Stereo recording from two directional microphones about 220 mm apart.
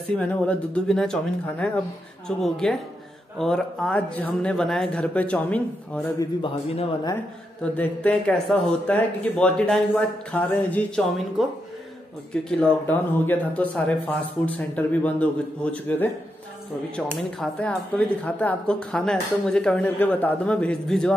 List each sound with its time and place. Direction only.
0.2 s speech: 5° left (ahead or behind)
6.4 s a man's voice: 25° left (ahead or behind)
7.6 s speech: 5° left (ahead or behind)
17.2 s speech: 5° left (ahead or behind)